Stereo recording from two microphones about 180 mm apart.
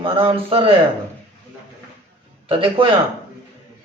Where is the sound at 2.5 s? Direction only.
30° right (ahead or behind).